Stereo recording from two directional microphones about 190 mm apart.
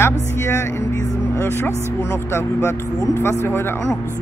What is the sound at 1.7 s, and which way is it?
Speech, 15° right (ahead or behind).